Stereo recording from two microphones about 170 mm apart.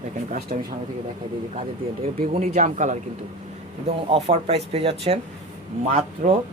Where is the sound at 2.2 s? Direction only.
40° right (ahead or behind).